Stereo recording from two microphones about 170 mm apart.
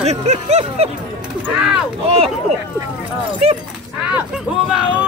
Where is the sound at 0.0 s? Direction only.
40° right (ahead or behind).